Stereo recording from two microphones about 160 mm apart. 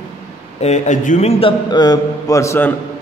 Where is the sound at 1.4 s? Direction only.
25° left (ahead or behind).